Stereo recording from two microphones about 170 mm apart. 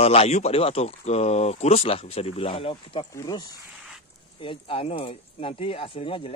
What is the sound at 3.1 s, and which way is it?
Speech, 20° left (ahead or behind).